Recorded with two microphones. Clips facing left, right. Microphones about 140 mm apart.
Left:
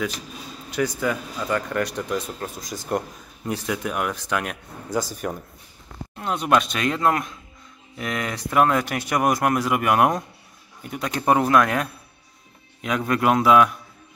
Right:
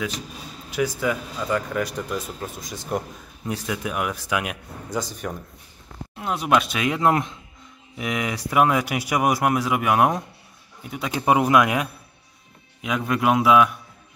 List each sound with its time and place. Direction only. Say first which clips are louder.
0.7 s speech: even; 5° right (ahead or behind)
7.0 s speech: right 2 dB; 20° right (ahead or behind)
8.0 s speech: right 1 dB; 10° right (ahead or behind)